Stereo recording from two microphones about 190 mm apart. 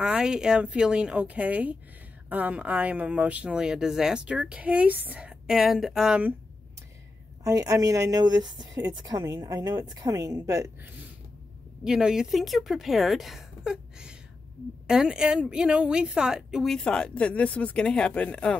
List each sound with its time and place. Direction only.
0.0 s a woman's voice: 5° right (ahead or behind)
7.4 s a woman's voice: 20° right (ahead or behind)
11.8 s a woman's voice: 5° right (ahead or behind)